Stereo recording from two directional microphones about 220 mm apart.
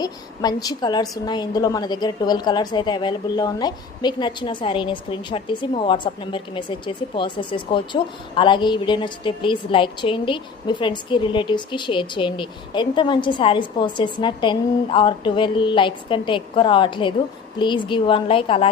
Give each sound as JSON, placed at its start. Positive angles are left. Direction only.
{"t": 0.0, "sound": "a woman's voice", "side_deg": 20}